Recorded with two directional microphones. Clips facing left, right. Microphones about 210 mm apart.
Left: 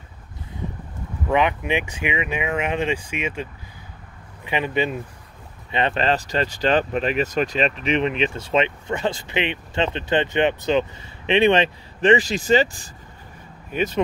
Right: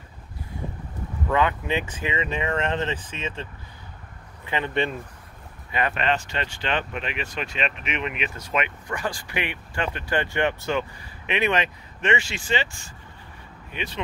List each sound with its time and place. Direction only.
1.3 s speech: 15° left (ahead or behind)
4.5 s speech: 15° left (ahead or behind)
4.7 s speech: 5° left (ahead or behind)
5.7 s speech: 25° left (ahead or behind); by 14.0 s 45° left (ahead or behind)